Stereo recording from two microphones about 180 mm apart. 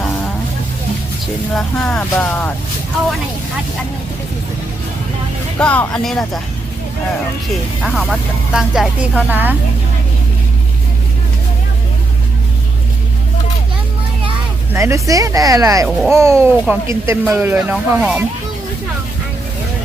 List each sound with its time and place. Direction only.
1.5 s speech: 5° left (ahead or behind)
5.5 s speech: 10° left (ahead or behind)
7.8 s speech: centre (ahead or behind)
14.7 s speech: 15° right (ahead or behind)